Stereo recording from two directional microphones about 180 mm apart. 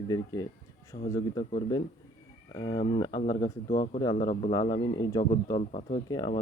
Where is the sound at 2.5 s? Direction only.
25° left (ahead or behind).